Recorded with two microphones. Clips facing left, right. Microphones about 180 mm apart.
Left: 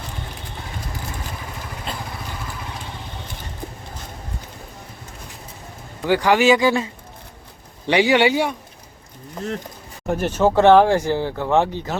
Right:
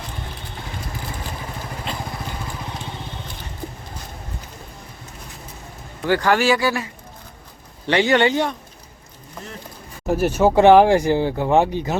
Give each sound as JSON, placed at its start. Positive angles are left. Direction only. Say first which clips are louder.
{"t": 6.1, "sound": "speech", "louder": "left 2 dB", "side_deg": 15}
{"t": 7.9, "sound": "speech", "louder": "left 1 dB", "side_deg": 10}
{"t": 10.1, "sound": "speech", "louder": "right 1 dB", "side_deg": -10}